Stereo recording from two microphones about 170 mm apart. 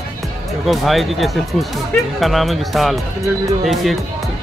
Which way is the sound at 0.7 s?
Centre (ahead or behind).